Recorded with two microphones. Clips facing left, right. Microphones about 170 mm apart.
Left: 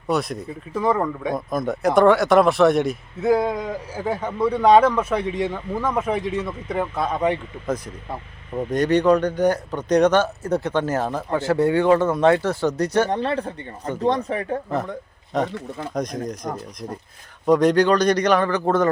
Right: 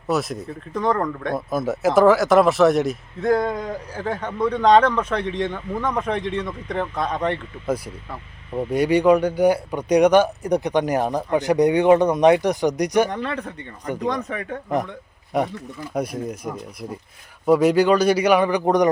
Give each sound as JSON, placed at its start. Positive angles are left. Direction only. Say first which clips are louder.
{"t": 0.1, "sound": "a man's voice", "louder": "even", "side_deg": 0}
{"t": 1.5, "sound": "a man's voice", "louder": "right 1 dB", "side_deg": -5}
{"t": 8.5, "sound": "speech", "louder": "even", "side_deg": -10}
{"t": 13.1, "sound": "speech", "louder": "left 4 dB", "side_deg": 30}
{"t": 15.3, "sound": "speech", "louder": "even", "side_deg": -10}